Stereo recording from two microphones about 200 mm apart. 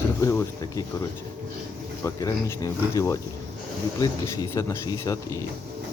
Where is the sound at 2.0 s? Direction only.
15° left (ahead or behind).